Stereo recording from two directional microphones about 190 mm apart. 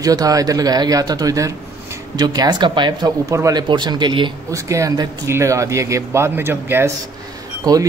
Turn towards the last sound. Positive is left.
turn(degrees=-20)  # may be behind; listen again after turning